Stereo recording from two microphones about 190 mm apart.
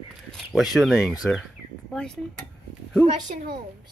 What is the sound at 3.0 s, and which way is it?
Speech, 35° right (ahead or behind).